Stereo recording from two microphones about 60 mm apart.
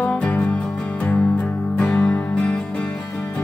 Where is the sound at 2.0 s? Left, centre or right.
Left.